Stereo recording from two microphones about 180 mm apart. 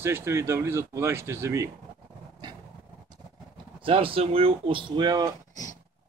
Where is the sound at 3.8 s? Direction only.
30° right (ahead or behind).